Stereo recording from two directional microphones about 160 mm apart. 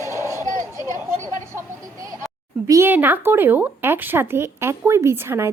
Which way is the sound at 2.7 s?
15° right (ahead or behind).